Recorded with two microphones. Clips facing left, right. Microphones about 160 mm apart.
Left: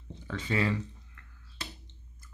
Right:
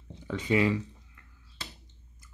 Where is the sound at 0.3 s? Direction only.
15° right (ahead or behind).